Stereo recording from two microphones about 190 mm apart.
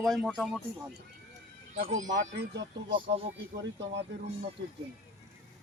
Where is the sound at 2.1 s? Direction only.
70° right (ahead or behind).